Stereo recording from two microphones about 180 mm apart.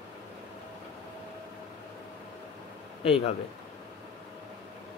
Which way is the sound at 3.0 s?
30° left (ahead or behind).